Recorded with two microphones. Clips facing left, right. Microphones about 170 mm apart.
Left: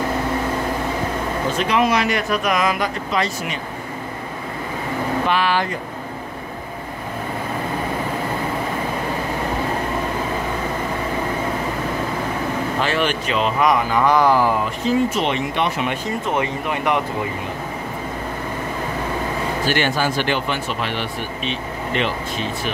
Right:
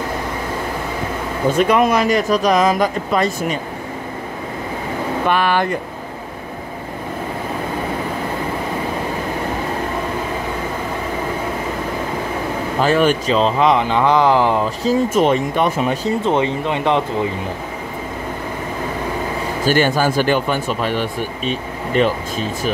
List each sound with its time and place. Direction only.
1.6 s speech: 50° right (ahead or behind)
5.3 s speech: 55° right (ahead or behind)
12.8 s speech: 40° right (ahead or behind); by 14.5 s 20° right (ahead or behind)
14.9 s speech: 40° right (ahead or behind); by 17.0 s 25° right (ahead or behind)
19.6 s speech: 45° right (ahead or behind)